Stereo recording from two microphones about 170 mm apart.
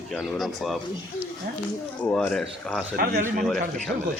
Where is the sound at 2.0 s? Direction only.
5° left (ahead or behind).